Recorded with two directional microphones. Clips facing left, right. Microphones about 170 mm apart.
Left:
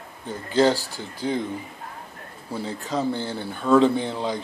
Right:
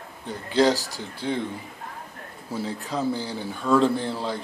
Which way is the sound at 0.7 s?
40° right (ahead or behind).